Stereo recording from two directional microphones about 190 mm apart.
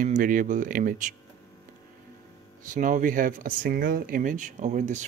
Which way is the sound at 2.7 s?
45° right (ahead or behind).